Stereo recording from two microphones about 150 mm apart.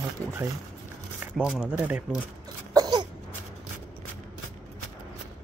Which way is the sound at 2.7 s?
25° right (ahead or behind).